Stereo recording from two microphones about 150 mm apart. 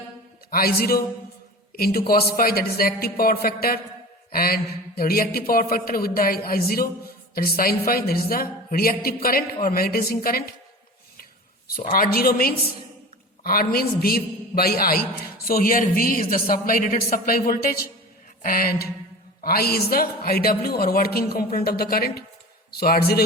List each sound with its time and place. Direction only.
0.5 s speech: 85° left
11.8 s speech: 70° left (ahead or behind)
15.4 s a man's voice: 70° left (ahead or behind); by 23.2 s 90° left